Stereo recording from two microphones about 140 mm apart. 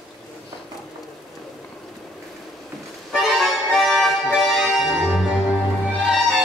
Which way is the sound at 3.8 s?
Centre (ahead or behind).